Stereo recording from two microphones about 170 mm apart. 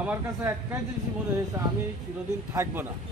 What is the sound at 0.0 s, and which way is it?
Speech, 10° right (ahead or behind).